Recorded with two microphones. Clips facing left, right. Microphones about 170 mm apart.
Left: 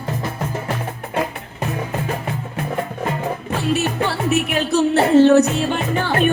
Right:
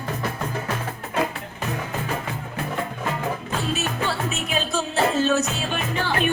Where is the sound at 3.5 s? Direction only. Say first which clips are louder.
Left 6 dB; 60° left (ahead or behind).